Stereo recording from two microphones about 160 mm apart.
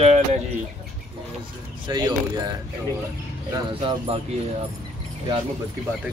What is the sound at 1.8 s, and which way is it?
Speech, 25° right (ahead or behind).